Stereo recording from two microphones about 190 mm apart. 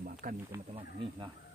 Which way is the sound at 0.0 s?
45° right (ahead or behind).